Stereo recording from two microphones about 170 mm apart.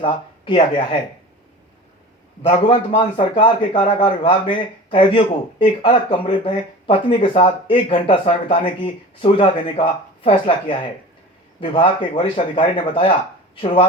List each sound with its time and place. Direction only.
0.0 s speech: 30° left (ahead or behind)
2.4 s a man's voice: 30° left (ahead or behind)